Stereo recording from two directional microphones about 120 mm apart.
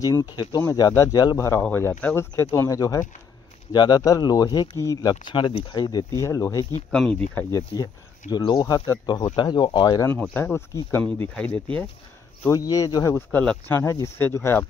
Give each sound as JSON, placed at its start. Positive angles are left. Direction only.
{"t": 0.0, "sound": "speech", "side_deg": 35}
{"t": 1.6, "sound": "speech", "side_deg": 15}
{"t": 5.2, "sound": "speech", "side_deg": 40}
{"t": 6.2, "sound": "speech", "side_deg": 25}
{"t": 6.9, "sound": "speech", "side_deg": 10}
{"t": 7.5, "sound": "speech", "side_deg": 35}
{"t": 10.2, "sound": "speech", "side_deg": 15}
{"t": 12.4, "sound": "speech", "side_deg": 30}